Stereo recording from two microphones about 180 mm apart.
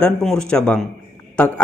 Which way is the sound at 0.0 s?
5° left (ahead or behind).